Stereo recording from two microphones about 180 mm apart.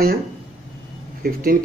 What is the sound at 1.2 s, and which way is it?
Speech, 55° right (ahead or behind).